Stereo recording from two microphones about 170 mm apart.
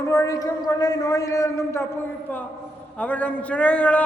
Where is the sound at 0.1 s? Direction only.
20° left (ahead or behind).